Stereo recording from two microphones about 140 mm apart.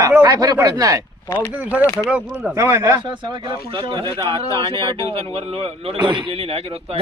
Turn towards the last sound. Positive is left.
turn(degrees=-40)  # may be behind; listen again after turning